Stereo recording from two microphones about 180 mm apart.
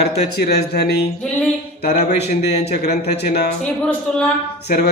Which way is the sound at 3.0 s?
65° left (ahead or behind).